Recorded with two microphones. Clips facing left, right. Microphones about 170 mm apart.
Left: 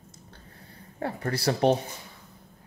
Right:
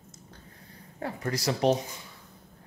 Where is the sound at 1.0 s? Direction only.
30° left (ahead or behind).